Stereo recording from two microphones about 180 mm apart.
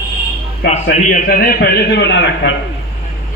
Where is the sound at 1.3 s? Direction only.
60° left (ahead or behind).